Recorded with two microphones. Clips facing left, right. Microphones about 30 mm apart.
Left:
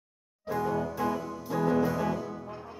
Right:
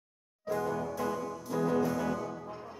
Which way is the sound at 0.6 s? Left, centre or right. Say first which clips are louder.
Left 4 dB; centre.